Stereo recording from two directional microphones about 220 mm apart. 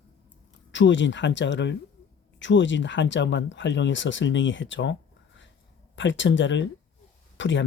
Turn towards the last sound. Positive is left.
turn(degrees=55)  # may be behind; listen again after turning